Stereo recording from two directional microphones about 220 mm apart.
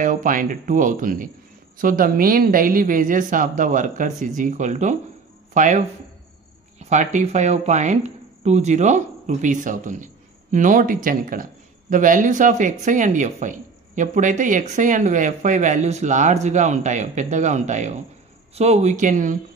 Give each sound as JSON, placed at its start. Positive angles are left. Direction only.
{"t": 0.0, "sound": "speech", "side_deg": -35}